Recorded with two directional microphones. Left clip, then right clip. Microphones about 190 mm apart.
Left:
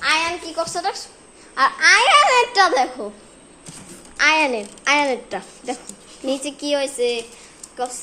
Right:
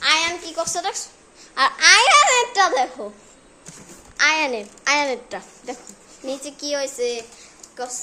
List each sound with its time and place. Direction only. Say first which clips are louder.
0.0 s a sound: even; 10° right (ahead or behind)
0.5 s baby laughter: left 1 dB; 10° right (ahead or behind)
2.5 s a child's voice: left 2 dB; 5° left (ahead or behind)
4.2 s a child's voice: left 2 dB; centre (ahead or behind)